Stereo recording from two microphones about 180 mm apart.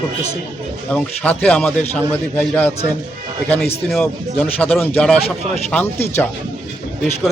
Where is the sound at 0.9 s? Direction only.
10° left (ahead or behind).